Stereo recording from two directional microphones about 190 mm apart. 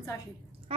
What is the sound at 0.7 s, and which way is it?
Speech, 30° right (ahead or behind).